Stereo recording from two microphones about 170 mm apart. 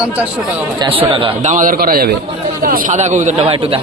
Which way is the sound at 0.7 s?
30° right (ahead or behind).